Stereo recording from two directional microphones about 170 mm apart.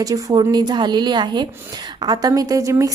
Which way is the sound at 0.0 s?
20° right (ahead or behind).